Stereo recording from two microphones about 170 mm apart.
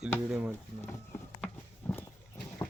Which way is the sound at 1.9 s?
10° left (ahead or behind).